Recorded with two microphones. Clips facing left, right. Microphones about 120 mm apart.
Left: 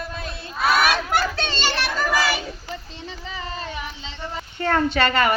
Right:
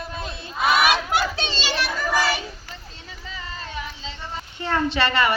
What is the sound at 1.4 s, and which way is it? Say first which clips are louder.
Children playing: left 2 dB; 55° left (ahead or behind).